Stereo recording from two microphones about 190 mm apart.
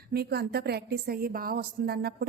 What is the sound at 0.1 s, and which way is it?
A woman's voice, 55° right (ahead or behind).